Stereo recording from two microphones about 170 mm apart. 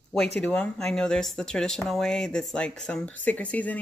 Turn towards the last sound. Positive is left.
turn(degrees=10)  # may be behind; listen again after turning